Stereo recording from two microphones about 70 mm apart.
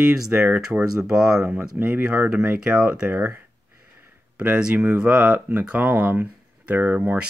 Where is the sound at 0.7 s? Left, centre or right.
Right.